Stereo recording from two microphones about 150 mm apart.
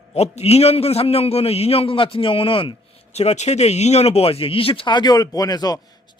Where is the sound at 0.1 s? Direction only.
45° left (ahead or behind).